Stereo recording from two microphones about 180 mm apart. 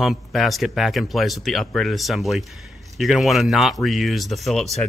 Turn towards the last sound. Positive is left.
turn(degrees=0)  # may be behind; listen again after turning